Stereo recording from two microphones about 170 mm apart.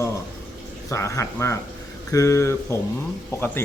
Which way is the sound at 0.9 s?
15° left (ahead or behind).